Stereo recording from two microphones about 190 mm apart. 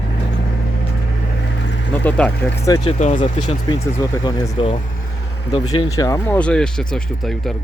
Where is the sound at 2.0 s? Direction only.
10° left (ahead or behind).